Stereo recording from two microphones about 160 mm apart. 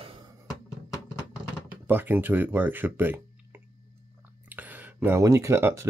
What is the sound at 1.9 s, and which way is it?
Speech, 10° right (ahead or behind).